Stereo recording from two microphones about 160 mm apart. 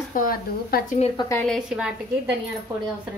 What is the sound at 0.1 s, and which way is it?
Speech, 60° left (ahead or behind).